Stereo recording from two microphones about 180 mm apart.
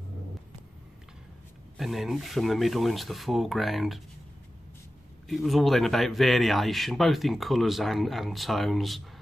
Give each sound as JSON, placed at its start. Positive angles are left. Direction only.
{"t": 1.8, "sound": "speech", "side_deg": 0}
{"t": 5.3, "sound": "speech", "side_deg": 0}